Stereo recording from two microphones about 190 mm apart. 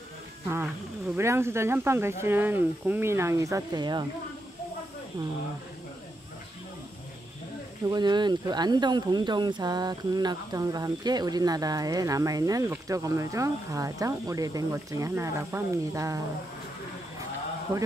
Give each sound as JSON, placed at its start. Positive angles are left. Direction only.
{"t": 0.5, "sound": "speech", "side_deg": -10}
{"t": 7.9, "sound": "speech", "side_deg": -20}